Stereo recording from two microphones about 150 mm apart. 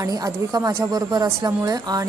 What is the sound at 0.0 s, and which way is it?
A woman's voice, 20° right (ahead or behind).